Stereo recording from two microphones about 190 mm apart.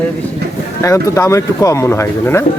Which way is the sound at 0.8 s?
15° left (ahead or behind).